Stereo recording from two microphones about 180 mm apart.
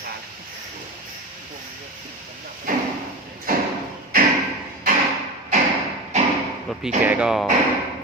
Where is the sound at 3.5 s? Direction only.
50° right (ahead or behind).